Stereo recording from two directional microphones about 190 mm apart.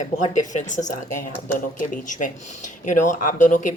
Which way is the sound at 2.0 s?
40° left (ahead or behind).